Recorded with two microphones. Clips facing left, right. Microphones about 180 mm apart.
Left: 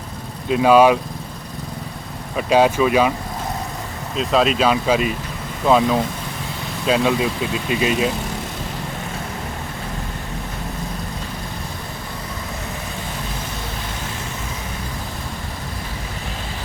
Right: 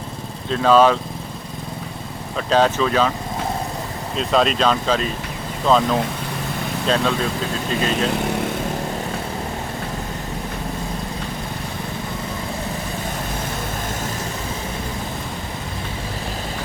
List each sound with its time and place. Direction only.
0.4 s speech: 10° left (ahead or behind)
2.3 s speech: 10° left (ahead or behind)
4.2 s speech: centre (ahead or behind)